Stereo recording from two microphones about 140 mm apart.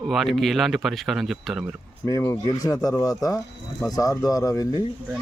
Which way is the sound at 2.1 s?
20° left (ahead or behind).